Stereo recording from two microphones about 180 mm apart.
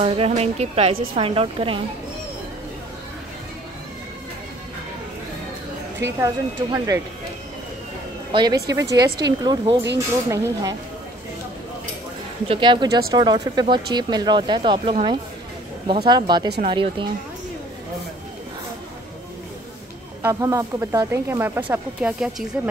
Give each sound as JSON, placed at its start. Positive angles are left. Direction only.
{"t": 0.0, "sound": "a woman's voice", "side_deg": -35}
{"t": 6.1, "sound": "a woman's voice", "side_deg": -15}
{"t": 8.3, "sound": "a woman's voice", "side_deg": -25}
{"t": 12.4, "sound": "speech", "side_deg": -25}
{"t": 20.2, "sound": "a woman's voice", "side_deg": -15}